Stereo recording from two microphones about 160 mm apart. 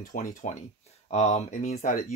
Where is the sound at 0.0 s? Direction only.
55° left (ahead or behind).